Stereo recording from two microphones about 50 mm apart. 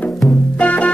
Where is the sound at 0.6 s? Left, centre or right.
Left.